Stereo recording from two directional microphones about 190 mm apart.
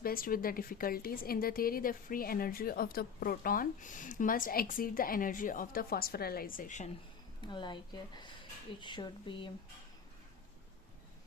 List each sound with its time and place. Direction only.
0.0 s a woman's voice: 50° left (ahead or behind)
7.4 s speech: 25° left (ahead or behind)